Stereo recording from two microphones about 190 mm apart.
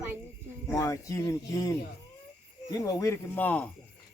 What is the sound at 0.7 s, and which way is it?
Speech, 15° left (ahead or behind).